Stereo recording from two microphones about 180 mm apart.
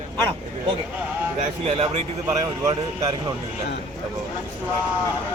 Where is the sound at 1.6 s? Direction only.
35° right (ahead or behind).